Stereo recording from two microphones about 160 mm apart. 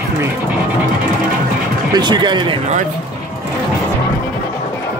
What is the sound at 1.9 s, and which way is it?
Speech, 30° right (ahead or behind).